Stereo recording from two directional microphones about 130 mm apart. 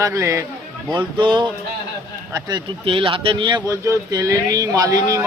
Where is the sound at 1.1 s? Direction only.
35° right (ahead or behind).